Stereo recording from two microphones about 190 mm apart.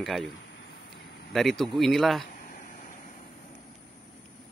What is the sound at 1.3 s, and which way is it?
Speech, centre (ahead or behind).